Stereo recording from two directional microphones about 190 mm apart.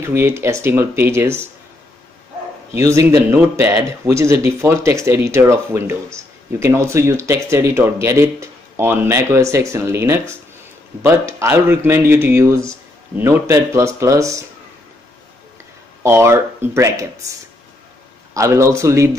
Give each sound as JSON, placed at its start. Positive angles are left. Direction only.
{"t": 0.0, "sound": "speech", "side_deg": -15}
{"t": 2.8, "sound": "speech", "side_deg": -15}
{"t": 16.0, "sound": "speech", "side_deg": -15}
{"t": 18.3, "sound": "speech", "side_deg": -15}